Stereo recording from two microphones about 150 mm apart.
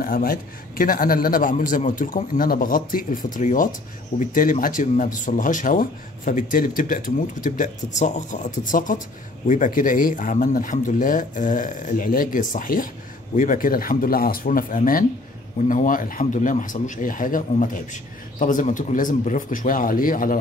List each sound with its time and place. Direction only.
0.0 s a man's voice: 75° left (ahead or behind)